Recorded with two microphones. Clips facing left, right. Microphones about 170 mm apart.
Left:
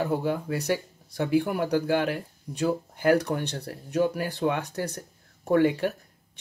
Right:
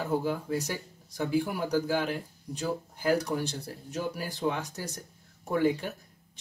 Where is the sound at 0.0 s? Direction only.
70° left (ahead or behind).